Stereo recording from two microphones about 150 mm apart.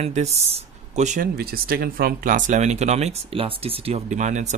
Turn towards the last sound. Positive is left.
turn(degrees=-55)  # may be behind; listen again after turning